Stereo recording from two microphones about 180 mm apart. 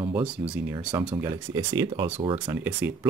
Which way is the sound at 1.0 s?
15° right (ahead or behind).